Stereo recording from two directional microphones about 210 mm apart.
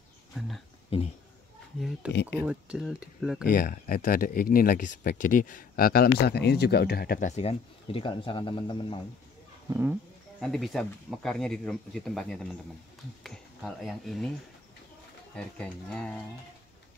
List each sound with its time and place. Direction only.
2.0 s speech: 5° right (ahead or behind)
3.4 s speech: 40° left (ahead or behind); by 9.0 s 25° left (ahead or behind)
9.7 s speech: 10° right (ahead or behind)
10.4 s speech: centre (ahead or behind)
15.3 s speech: 5° left (ahead or behind)